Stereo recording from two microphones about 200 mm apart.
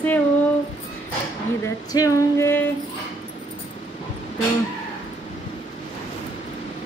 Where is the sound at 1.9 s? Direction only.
15° left (ahead or behind).